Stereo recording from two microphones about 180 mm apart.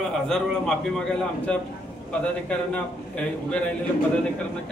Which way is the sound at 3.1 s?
5° left (ahead or behind).